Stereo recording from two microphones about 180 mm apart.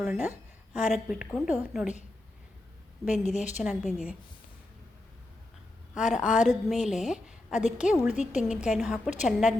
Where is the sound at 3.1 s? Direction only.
40° left (ahead or behind).